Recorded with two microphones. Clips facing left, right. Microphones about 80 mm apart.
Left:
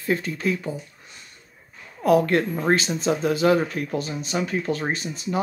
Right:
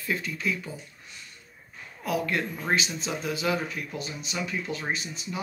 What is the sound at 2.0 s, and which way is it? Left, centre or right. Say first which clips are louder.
Speech: left 10 dB; left.